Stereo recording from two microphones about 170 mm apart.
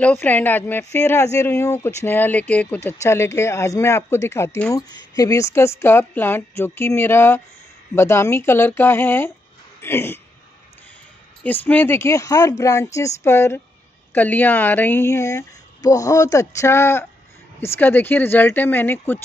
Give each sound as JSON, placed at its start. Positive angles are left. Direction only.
{"t": 0.0, "sound": "speech", "side_deg": 10}
{"t": 11.4, "sound": "speech", "side_deg": 10}